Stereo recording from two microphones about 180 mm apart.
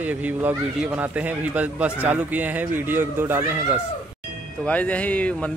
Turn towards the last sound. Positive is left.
turn(degrees=5)  # may be behind; listen again after turning